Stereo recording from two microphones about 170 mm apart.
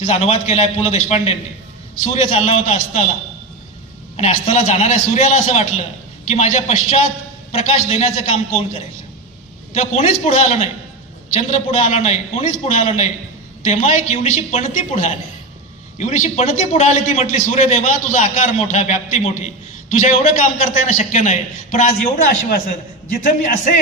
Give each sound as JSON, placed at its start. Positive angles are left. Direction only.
{"t": 0.0, "sound": "a man's voice", "side_deg": 40}
{"t": 4.2, "sound": "a man's voice", "side_deg": 45}